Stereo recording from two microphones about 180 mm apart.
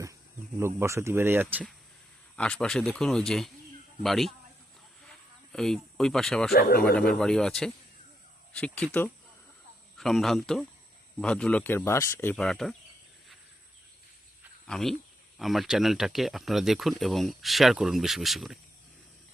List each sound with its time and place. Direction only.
0.6 s speech: 15° right (ahead or behind)
2.3 s speech: 5° left (ahead or behind)
5.5 s speech: 5° left (ahead or behind)
6.5 s speech: 55° left (ahead or behind)
6.9 s speech: 5° left (ahead or behind)
14.7 s speech: centre (ahead or behind)